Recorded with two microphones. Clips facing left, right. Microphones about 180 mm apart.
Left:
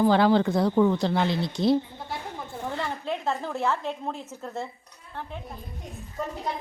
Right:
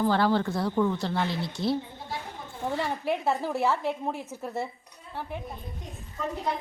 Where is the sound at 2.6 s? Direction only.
15° right (ahead or behind).